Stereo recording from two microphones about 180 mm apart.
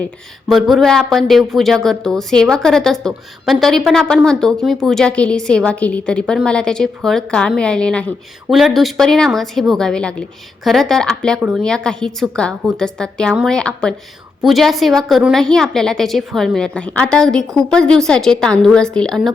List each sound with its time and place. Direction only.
0.4 s a woman's voice: centre (ahead or behind)